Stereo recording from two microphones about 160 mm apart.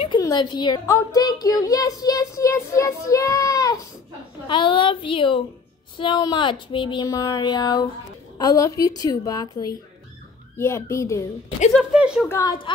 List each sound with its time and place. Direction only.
0.0 s a woman's voice: 30° left (ahead or behind)
11.8 s speech: 5° right (ahead or behind)
12.3 s speech: 20° left (ahead or behind)